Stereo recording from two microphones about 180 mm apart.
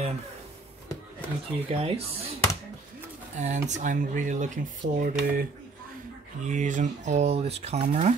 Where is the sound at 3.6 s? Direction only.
45° right (ahead or behind).